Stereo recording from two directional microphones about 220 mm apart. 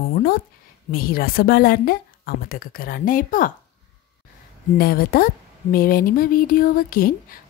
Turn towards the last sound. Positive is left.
turn(degrees=40)  # may be behind; listen again after turning